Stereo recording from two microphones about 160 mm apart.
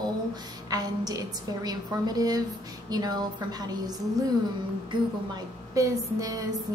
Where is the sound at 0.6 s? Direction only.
25° right (ahead or behind).